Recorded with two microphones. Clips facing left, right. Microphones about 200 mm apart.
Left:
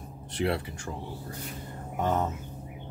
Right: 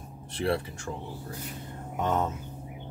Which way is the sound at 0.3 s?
20° left (ahead or behind).